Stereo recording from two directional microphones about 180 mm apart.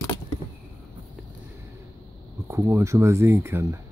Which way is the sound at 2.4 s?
15° right (ahead or behind).